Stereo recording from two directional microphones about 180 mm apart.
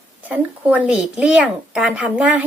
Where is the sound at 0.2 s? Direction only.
10° right (ahead or behind).